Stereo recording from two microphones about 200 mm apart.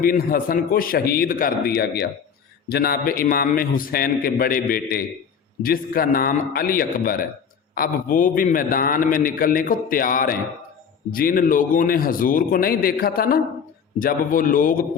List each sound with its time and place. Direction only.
0.0 s a man's voice: 45° left (ahead or behind)